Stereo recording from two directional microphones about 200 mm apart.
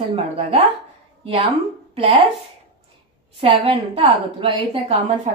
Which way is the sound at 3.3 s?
25° right (ahead or behind).